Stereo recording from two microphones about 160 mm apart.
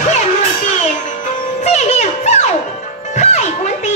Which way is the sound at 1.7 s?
45° left (ahead or behind).